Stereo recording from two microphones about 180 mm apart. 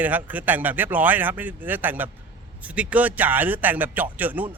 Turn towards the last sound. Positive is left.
turn(degrees=-10)  # may be behind; listen again after turning